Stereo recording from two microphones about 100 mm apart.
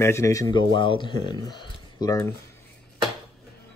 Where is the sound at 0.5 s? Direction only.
50° left (ahead or behind); by 2.3 s 35° left (ahead or behind).